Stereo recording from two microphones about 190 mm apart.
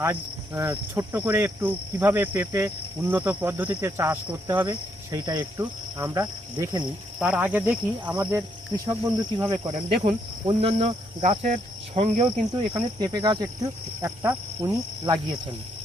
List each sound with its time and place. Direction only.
0.0 s cricket: 10° right (ahead or behind)
4.6 s cricket: 20° right (ahead or behind); by 12.3 s 35° right (ahead or behind)
12.7 s cricket: 20° right (ahead or behind)